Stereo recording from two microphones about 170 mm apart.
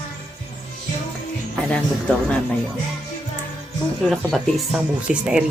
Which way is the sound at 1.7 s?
5° left (ahead or behind).